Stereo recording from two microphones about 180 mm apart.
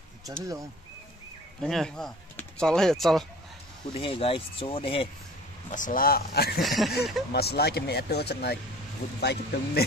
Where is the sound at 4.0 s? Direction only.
30° left (ahead or behind).